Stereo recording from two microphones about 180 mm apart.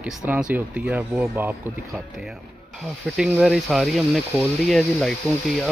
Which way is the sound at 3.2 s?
Centre (ahead or behind).